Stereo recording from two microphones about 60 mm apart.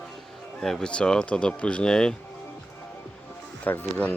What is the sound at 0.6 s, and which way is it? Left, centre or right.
Speech, centre.